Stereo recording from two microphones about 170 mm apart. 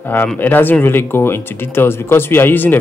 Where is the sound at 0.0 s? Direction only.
10° left (ahead or behind).